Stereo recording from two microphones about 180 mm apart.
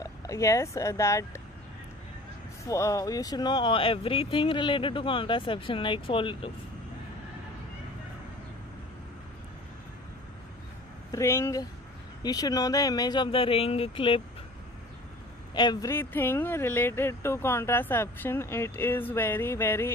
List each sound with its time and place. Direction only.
0.0 s speech: 15° left (ahead or behind)
2.6 s speech: 20° left (ahead or behind)
11.1 s speech: 15° left (ahead or behind)
15.5 s speech: 25° left (ahead or behind)